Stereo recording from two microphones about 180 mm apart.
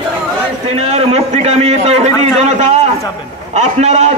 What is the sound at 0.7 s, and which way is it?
A man's voice, 35° right (ahead or behind).